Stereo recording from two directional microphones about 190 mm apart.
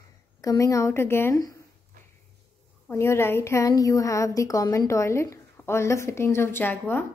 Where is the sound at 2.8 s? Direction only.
15° left (ahead or behind).